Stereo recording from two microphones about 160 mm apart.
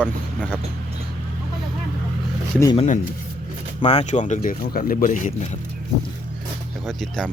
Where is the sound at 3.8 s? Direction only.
40° left (ahead or behind).